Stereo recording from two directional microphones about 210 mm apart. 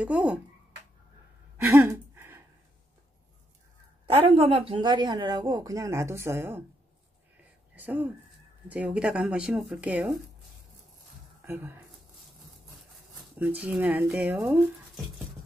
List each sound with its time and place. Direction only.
0.0 s speech: 5° right (ahead or behind)
1.7 s a sound: 10° right (ahead or behind)
4.0 s speech: 25° right (ahead or behind); by 6.6 s 10° right (ahead or behind)
7.7 s speech: 10° right (ahead or behind)
11.4 s speech: 10° right (ahead or behind)
13.2 s speech: 5° right (ahead or behind)